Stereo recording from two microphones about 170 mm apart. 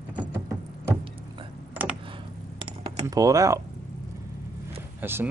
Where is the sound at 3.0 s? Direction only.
20° right (ahead or behind).